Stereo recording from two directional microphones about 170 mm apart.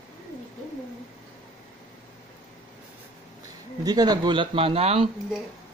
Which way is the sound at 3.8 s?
25° right (ahead or behind).